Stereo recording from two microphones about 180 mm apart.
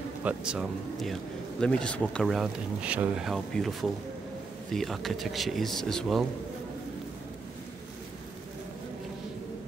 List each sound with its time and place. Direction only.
0.2 s speech: 5° right (ahead or behind)
4.7 s speech: centre (ahead or behind)